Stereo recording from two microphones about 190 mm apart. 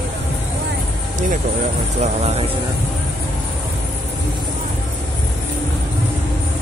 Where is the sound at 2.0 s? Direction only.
35° right (ahead or behind).